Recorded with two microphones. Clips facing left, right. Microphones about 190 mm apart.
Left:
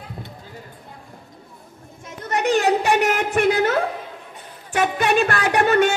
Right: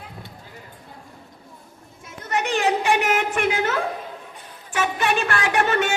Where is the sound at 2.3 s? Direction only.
40° left (ahead or behind).